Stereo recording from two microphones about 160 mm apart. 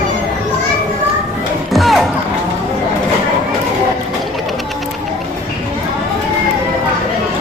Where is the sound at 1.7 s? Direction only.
Centre (ahead or behind).